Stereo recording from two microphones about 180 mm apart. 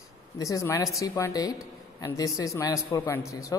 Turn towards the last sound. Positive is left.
turn(degrees=15)  # may be behind; listen again after turning